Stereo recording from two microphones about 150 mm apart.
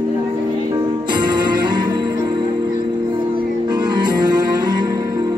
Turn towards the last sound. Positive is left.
turn(degrees=-30)  # may be behind; listen again after turning